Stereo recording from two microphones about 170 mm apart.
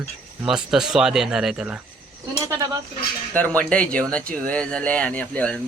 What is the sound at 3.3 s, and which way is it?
Speech, 10° left (ahead or behind).